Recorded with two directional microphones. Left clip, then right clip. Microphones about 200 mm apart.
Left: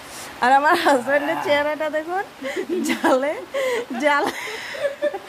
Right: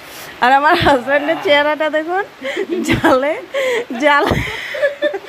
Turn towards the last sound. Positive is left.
turn(degrees=-10)  # may be behind; listen again after turning